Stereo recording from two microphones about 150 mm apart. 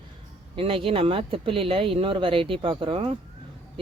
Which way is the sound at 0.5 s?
35° right (ahead or behind).